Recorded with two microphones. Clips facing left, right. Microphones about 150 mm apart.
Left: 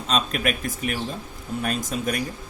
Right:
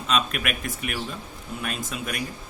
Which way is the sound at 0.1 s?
35° left (ahead or behind).